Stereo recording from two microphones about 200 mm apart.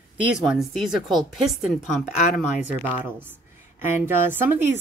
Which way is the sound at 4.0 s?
10° right (ahead or behind).